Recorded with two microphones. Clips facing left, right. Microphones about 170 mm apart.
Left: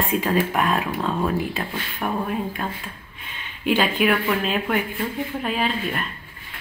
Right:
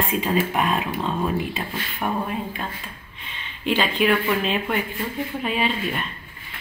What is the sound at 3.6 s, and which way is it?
Speech, 5° left (ahead or behind).